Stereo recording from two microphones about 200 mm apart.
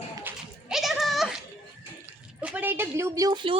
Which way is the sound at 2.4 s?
10° right (ahead or behind).